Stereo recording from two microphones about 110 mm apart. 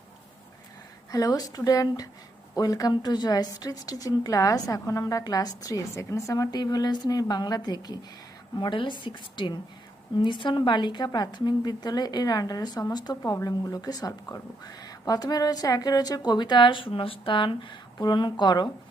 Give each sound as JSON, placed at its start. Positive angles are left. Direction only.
{"t": 1.1, "sound": "a woman's voice", "side_deg": 35}